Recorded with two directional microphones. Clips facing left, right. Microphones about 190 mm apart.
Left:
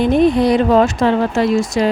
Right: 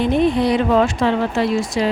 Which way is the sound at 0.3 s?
40° left (ahead or behind).